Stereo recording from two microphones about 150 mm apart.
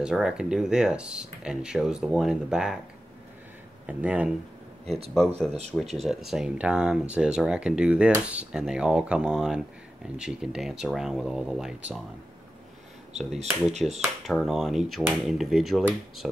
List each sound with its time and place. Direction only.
0.0 s speech: 5° right (ahead or behind)
3.8 s speech: 10° right (ahead or behind)
5.7 s speech: centre (ahead or behind)
13.1 s speech: 50° right (ahead or behind)
14.2 s speech: centre (ahead or behind)